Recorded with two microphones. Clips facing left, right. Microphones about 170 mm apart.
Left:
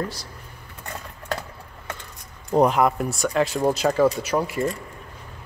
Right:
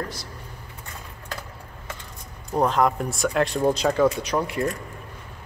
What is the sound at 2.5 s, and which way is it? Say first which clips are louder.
Speech: left 4 dB; 15° left (ahead or behind).